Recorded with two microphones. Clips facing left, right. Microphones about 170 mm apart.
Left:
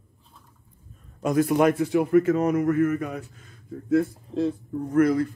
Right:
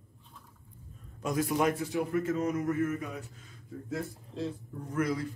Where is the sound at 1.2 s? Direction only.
60° left (ahead or behind).